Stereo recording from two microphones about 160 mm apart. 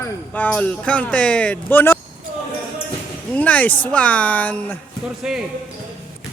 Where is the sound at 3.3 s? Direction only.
10° left (ahead or behind).